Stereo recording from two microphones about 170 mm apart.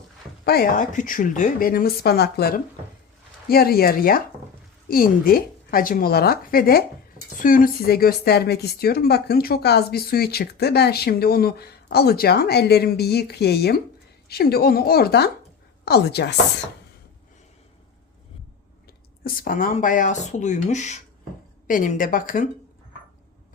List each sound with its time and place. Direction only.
0.4 s a woman's voice: 60° left (ahead or behind)
19.2 s speech: 55° left (ahead or behind)